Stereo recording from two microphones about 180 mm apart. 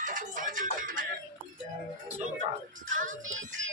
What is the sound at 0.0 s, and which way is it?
Music, 45° right (ahead or behind).